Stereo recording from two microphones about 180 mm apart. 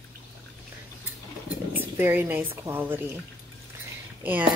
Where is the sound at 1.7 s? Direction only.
10° right (ahead or behind).